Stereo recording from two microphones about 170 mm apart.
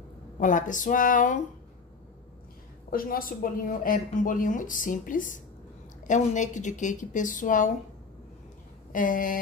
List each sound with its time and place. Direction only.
0.4 s a woman's voice: 50° left (ahead or behind)
2.9 s a woman's voice: 55° left (ahead or behind)
8.9 s a sound: 55° left (ahead or behind)